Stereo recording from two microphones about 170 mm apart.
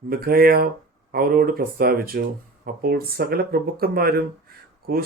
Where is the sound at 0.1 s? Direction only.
65° right (ahead or behind).